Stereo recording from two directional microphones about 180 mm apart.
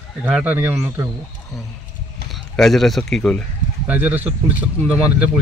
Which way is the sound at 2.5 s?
Centre (ahead or behind).